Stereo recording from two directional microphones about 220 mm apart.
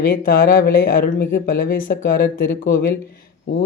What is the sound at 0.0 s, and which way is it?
Speech, 45° left (ahead or behind).